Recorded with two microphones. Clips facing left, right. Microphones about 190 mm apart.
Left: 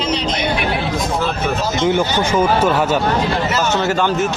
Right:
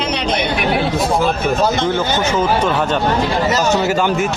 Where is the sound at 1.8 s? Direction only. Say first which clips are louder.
Left 1 dB; 15° left (ahead or behind).